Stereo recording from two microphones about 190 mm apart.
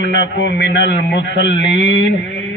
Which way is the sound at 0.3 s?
65° left (ahead or behind).